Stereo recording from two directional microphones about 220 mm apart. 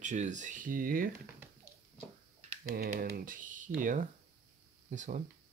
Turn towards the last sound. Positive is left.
turn(degrees=-35)  # may be behind; listen again after turning